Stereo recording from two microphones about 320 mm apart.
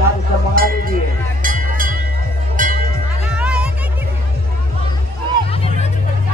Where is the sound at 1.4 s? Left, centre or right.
Right.